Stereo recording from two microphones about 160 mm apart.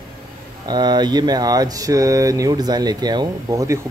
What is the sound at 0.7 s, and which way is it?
Speech, 25° right (ahead or behind).